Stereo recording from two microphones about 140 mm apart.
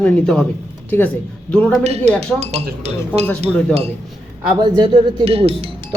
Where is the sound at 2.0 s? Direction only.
5° left (ahead or behind).